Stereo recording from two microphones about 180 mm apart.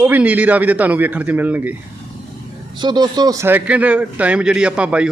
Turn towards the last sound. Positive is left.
turn(degrees=-5)  # may be behind; listen again after turning